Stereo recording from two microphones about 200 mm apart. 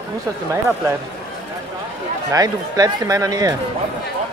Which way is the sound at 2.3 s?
20° right (ahead or behind).